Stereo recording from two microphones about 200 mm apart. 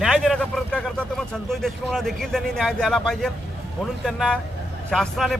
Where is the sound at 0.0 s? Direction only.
Centre (ahead or behind).